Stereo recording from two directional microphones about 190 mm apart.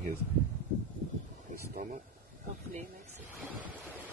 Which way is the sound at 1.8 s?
40° right (ahead or behind).